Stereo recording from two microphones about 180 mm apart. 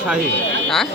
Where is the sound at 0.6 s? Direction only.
Centre (ahead or behind).